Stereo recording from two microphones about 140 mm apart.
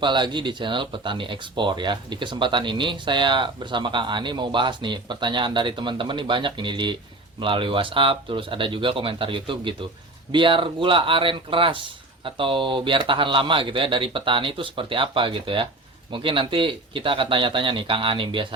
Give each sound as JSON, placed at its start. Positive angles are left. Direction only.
{"t": 0.0, "sound": "speech", "side_deg": -35}